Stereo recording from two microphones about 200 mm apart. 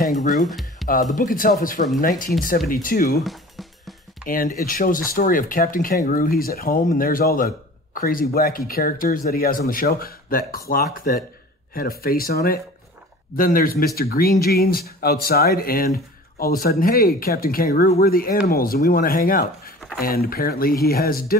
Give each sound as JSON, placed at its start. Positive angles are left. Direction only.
{"t": 0.3, "sound": "speech", "side_deg": 0}
{"t": 1.1, "sound": "speech", "side_deg": 45}
{"t": 3.3, "sound": "music", "side_deg": 0}
{"t": 4.3, "sound": "speech", "side_deg": 45}